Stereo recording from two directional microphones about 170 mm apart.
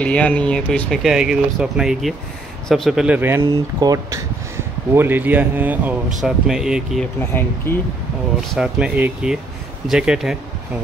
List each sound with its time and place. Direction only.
0.0 s speech: 5° left (ahead or behind)
7.2 s speech: 10° left (ahead or behind)
8.5 s speech: 5° right (ahead or behind)